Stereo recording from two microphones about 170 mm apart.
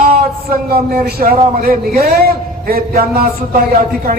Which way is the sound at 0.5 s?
60° right (ahead or behind).